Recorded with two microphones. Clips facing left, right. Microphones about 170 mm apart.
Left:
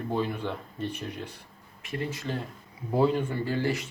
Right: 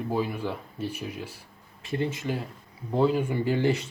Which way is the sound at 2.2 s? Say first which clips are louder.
Right 2 dB; 10° right (ahead or behind).